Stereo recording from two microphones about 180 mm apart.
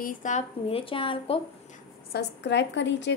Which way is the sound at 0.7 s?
30° left (ahead or behind).